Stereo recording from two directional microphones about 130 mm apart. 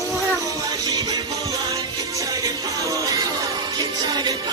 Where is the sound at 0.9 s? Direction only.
30° right (ahead or behind).